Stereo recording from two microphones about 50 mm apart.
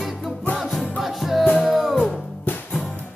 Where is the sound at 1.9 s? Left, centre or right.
Centre.